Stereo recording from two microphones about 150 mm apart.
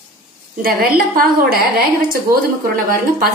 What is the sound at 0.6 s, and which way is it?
Speech, 85° right.